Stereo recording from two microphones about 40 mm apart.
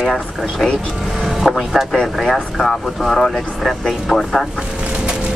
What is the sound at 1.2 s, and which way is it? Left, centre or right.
Speech, centre.